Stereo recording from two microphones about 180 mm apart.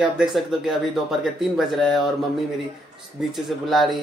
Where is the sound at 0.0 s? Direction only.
Centre (ahead or behind).